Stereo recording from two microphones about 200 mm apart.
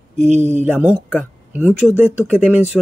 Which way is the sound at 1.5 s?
10° right (ahead or behind).